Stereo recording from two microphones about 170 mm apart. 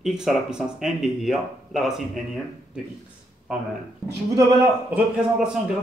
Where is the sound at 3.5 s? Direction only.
5° right (ahead or behind).